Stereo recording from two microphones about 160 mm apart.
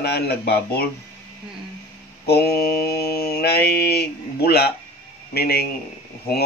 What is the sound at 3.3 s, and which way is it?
Speech, 80° left.